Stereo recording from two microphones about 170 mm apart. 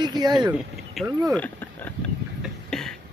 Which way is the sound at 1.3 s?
10° left (ahead or behind).